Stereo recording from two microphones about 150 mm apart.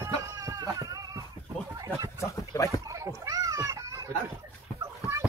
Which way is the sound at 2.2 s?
20° left (ahead or behind).